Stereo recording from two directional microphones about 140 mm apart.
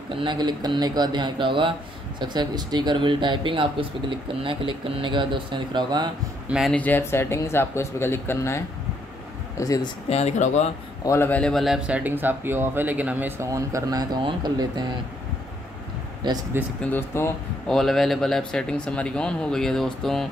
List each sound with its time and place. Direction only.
0.1 s speech: 35° right (ahead or behind)
6.7 s speech: 10° left (ahead or behind)
10.0 s speech: 50° left (ahead or behind)
11.1 s speech: 15° left (ahead or behind); by 14.9 s 30° right (ahead or behind)
16.6 s speech: 15° right (ahead or behind)
16.9 s speech: 20° left (ahead or behind)
17.6 s speech: centre (ahead or behind)